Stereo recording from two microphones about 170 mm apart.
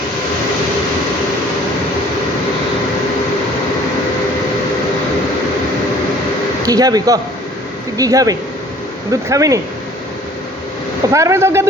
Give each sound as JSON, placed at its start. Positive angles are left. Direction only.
{"t": 6.7, "sound": "speech", "side_deg": -20}
{"t": 11.1, "sound": "speech", "side_deg": -20}